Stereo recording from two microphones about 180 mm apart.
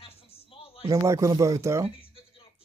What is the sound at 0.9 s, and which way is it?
Speech, 15° right (ahead or behind).